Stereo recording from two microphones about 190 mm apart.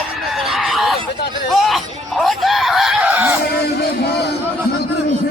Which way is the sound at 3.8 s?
60° left (ahead or behind).